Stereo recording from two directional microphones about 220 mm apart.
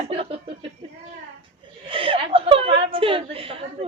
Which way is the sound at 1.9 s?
25° right (ahead or behind).